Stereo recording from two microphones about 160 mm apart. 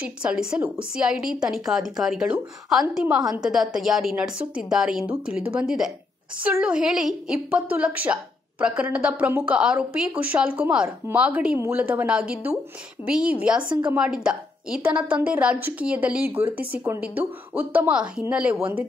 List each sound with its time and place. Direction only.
0.2 s a woman's voice: 5° right (ahead or behind)